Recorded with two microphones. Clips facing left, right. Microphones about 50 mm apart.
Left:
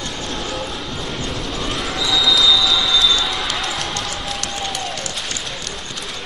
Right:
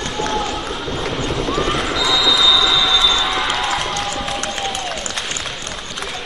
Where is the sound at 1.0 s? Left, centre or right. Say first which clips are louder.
Right 7 dB; right.